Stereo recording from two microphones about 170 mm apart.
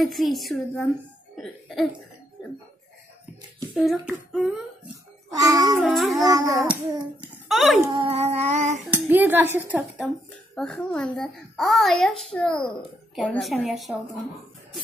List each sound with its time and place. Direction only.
0.0 s a child's voice: centre (ahead or behind)
1.3 s cough: centre (ahead or behind)
3.7 s a child's voice: centre (ahead or behind)
5.3 s music: 20° right (ahead or behind)
5.8 s a child's voice: centre (ahead or behind)
6.2 s music: 20° right (ahead or behind)
6.7 s a child's voice: 5° right (ahead or behind)
7.9 s a sound: 35° right (ahead or behind)
8.9 s speech: 10° right (ahead or behind)
10.5 s a child's voice: 5° left (ahead or behind)